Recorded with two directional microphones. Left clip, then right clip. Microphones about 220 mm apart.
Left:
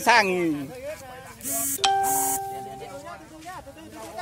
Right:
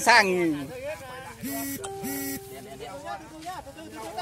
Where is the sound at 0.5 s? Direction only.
45° right (ahead or behind).